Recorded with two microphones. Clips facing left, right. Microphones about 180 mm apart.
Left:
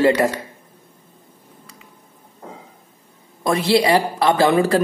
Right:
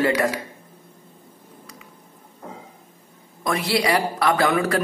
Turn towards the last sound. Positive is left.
turn(degrees=30)  # may be behind; listen again after turning